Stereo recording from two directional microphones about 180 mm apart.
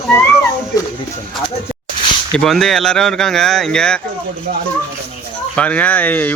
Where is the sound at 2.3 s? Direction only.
5° left (ahead or behind).